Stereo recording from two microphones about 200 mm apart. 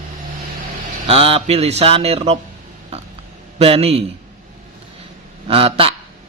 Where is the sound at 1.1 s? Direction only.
30° right (ahead or behind).